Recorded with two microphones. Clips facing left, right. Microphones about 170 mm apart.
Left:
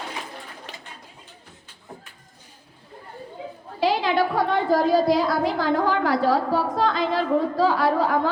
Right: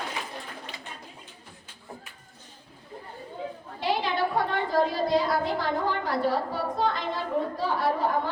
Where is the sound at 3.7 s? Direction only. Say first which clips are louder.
Left 6 dB; 90° left.